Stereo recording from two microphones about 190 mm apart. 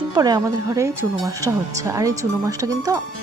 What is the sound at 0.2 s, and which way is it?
Speech, 20° right (ahead or behind).